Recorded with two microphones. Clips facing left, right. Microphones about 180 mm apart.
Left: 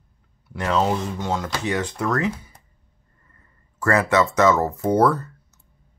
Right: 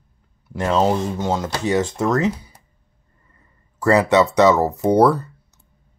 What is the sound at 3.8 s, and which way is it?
Speech, 15° right (ahead or behind).